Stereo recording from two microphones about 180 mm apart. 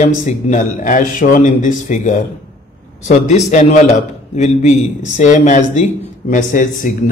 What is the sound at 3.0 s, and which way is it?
Speech, 40° left (ahead or behind).